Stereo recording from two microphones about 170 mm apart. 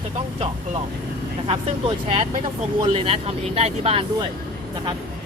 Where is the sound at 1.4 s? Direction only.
35° right (ahead or behind).